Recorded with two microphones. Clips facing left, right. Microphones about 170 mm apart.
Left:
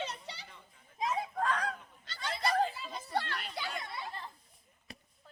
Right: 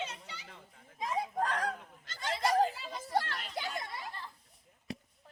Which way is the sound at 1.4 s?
40° right (ahead or behind).